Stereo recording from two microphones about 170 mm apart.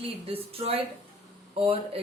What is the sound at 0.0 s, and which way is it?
Speech, 35° right (ahead or behind).